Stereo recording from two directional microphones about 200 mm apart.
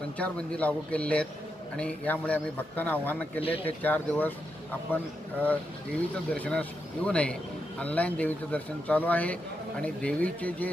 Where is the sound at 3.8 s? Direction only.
10° left (ahead or behind).